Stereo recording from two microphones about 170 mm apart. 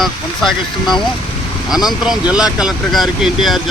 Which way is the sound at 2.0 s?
5° right (ahead or behind).